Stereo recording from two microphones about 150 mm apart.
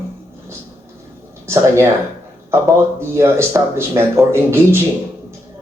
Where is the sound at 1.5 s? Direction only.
20° right (ahead or behind).